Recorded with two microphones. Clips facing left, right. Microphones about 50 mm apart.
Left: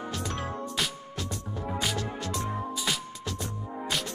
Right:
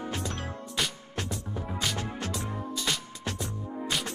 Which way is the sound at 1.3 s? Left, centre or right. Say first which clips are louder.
Right 1 dB; centre.